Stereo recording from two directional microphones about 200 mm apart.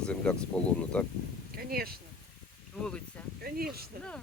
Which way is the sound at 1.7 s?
50° right (ahead or behind).